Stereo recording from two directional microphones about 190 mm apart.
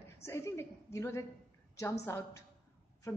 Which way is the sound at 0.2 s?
15° left (ahead or behind).